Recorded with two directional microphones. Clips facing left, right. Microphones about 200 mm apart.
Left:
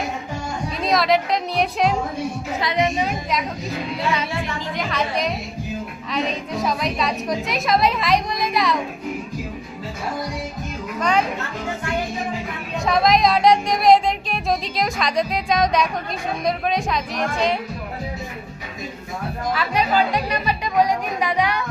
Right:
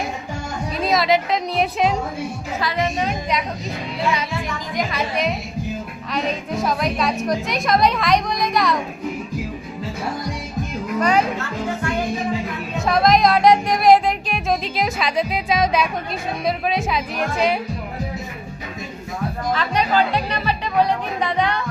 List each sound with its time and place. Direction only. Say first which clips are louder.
0.8 s speech: right 1 dB; centre (ahead or behind)
2.6 s a woman's voice: left 1 dB; 20° left (ahead or behind)
3.1 s speech: right 1 dB; centre (ahead or behind)
4.9 s a woman's voice: left 1 dB; 5° right (ahead or behind)
12.8 s music: right 1 dB; centre (ahead or behind)
16.5 s speech: right 1 dB; 5° right (ahead or behind)
19.5 s music: even; 10° left (ahead or behind)